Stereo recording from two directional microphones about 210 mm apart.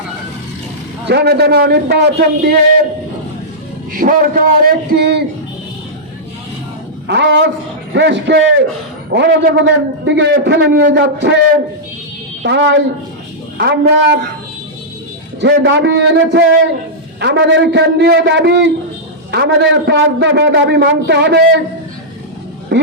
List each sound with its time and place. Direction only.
1.0 s a man's voice: 50° right (ahead or behind)
3.9 s a man's voice: 40° right (ahead or behind)
7.1 s a man's voice: 55° right (ahead or behind)
12.4 s a woman's voice: 60° right (ahead or behind)
15.4 s a man's voice: 55° right (ahead or behind)
22.7 s speech: 55° right (ahead or behind)